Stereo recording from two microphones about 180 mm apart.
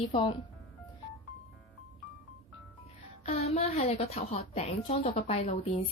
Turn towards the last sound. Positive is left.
turn(degrees=35)  # may be behind; listen again after turning